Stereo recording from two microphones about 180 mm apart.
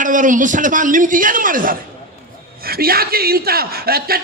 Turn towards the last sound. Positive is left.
turn(degrees=-55)  # may be behind; listen again after turning